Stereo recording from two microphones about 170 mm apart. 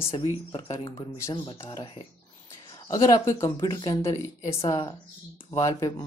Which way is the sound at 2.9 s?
20° left (ahead or behind).